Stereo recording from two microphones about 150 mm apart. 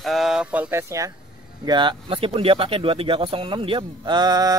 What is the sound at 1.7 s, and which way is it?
Speech, 30° right (ahead or behind).